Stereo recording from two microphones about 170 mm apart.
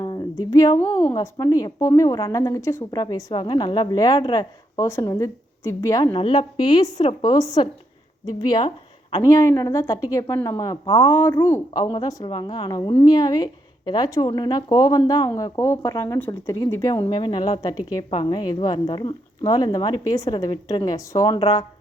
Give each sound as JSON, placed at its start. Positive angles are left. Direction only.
{"t": 0.0, "sound": "a sound", "side_deg": 25}
{"t": 0.9, "sound": "a woman's voice", "side_deg": 30}
{"t": 9.2, "sound": "a woman's voice", "side_deg": 20}
{"t": 11.1, "sound": "a woman's voice", "side_deg": 15}
{"t": 11.7, "sound": "a woman's voice", "side_deg": 25}
{"t": 16.9, "sound": "a woman's voice", "side_deg": 30}